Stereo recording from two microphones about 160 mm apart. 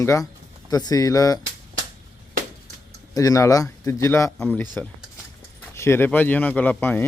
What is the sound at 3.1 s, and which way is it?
Speech, 20° left (ahead or behind).